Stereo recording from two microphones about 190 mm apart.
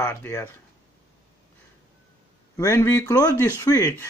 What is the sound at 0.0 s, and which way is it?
Speech, 15° left (ahead or behind).